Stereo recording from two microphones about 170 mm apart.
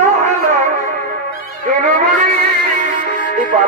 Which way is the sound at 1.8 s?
50° right (ahead or behind).